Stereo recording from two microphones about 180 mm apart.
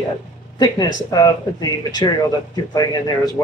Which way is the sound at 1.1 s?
20° left (ahead or behind).